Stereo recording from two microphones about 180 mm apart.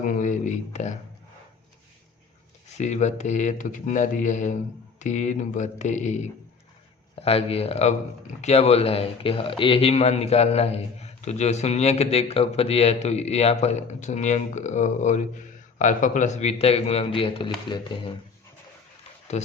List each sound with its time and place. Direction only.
0.0 s a sound: 45° left (ahead or behind)
2.6 s a man's voice: 40° left (ahead or behind)
7.2 s a man's voice: 35° left (ahead or behind)
19.3 s a man's voice: 40° left (ahead or behind)